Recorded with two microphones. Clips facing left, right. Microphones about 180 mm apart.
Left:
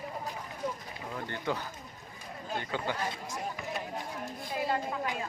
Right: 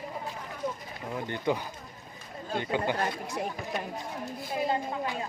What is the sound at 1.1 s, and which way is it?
Speech, 15° right (ahead or behind).